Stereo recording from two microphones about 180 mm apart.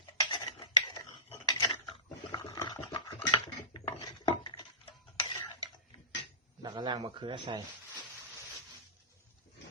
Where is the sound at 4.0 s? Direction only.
20° left (ahead or behind).